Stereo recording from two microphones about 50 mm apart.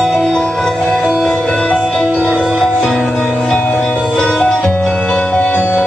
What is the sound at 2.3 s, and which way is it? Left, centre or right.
Music, centre.